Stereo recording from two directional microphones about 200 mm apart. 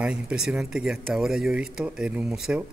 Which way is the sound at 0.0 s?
5° right (ahead or behind).